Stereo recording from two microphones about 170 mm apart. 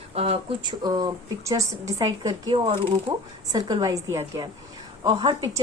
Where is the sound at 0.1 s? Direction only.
35° right (ahead or behind).